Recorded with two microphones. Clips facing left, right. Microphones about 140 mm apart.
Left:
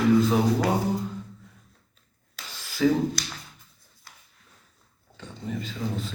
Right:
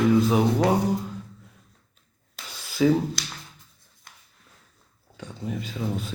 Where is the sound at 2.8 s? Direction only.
10° right (ahead or behind).